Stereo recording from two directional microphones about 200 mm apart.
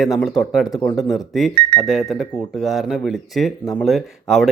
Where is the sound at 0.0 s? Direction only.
Centre (ahead or behind).